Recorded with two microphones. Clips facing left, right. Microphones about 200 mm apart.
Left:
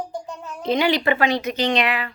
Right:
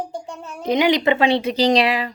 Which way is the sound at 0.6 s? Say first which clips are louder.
Right 3 dB; 20° right (ahead or behind).